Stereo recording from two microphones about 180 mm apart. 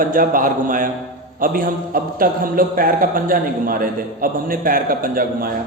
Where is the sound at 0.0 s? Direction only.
50° right (ahead or behind).